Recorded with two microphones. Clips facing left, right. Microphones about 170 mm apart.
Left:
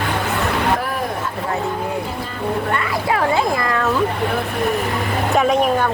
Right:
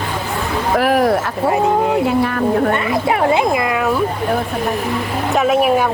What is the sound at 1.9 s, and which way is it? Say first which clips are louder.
Speech: right 10 dB; 75° right (ahead or behind).